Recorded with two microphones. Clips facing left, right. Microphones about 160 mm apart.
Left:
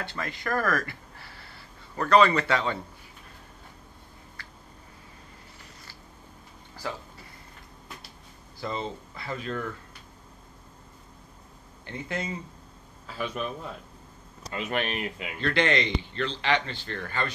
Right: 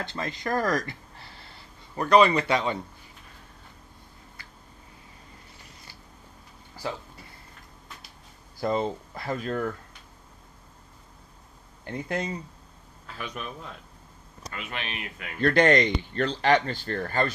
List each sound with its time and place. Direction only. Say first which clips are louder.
0.0 s speech: right 2 dB; 20° right (ahead or behind)
2.0 s a man's voice: right 1 dB; 15° right (ahead or behind)
8.5 s speech: right 6 dB; 50° right (ahead or behind)
11.8 s speech: right 3 dB; 40° right (ahead or behind)
13.0 s a man's voice: left 5 dB; centre (ahead or behind)
14.6 s speech: left 7 dB; 45° left (ahead or behind)
15.4 s speech: right 5 dB; 45° right (ahead or behind)